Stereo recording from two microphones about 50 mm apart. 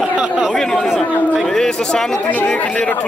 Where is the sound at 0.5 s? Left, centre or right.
Centre.